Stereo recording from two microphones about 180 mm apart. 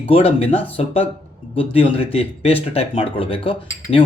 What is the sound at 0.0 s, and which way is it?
Speech, 30° left (ahead or behind).